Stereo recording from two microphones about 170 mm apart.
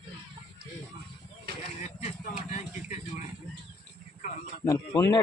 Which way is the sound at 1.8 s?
40° left (ahead or behind).